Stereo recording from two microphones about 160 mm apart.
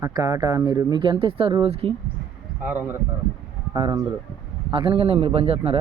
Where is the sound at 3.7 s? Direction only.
25° right (ahead or behind).